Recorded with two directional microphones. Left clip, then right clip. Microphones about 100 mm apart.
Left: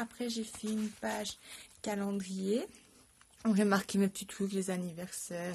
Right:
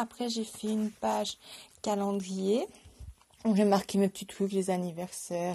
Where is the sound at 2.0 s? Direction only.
40° left (ahead or behind).